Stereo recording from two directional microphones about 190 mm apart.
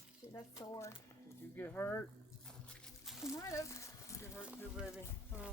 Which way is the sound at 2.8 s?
Centre (ahead or behind).